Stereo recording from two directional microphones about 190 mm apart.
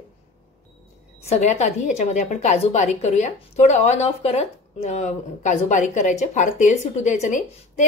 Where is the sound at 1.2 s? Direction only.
35° left (ahead or behind).